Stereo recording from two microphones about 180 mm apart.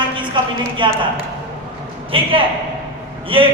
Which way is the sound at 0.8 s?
25° right (ahead or behind).